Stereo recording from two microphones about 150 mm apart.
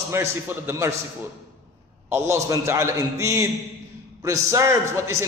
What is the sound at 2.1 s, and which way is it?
A man's voice, 20° right (ahead or behind).